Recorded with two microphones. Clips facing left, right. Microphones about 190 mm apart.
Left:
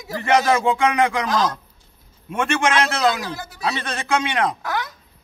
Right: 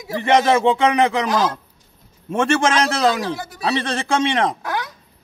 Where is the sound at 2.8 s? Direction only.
35° right (ahead or behind).